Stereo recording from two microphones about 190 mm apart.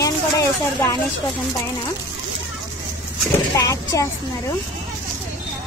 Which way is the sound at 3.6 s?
20° left (ahead or behind).